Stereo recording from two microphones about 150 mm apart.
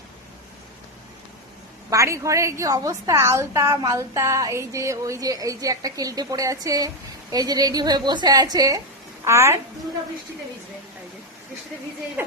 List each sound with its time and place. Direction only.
1.9 s a woman's voice: 20° right (ahead or behind)